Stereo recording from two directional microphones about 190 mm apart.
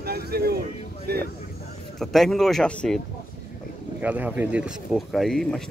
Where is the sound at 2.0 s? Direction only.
Centre (ahead or behind).